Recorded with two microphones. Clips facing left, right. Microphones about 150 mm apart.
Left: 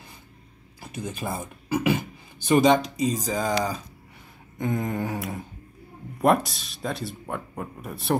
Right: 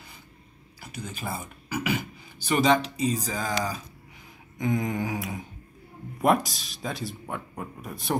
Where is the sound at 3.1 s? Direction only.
40° left (ahead or behind).